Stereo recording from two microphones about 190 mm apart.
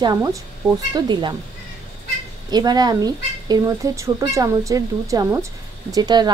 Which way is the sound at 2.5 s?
20° right (ahead or behind).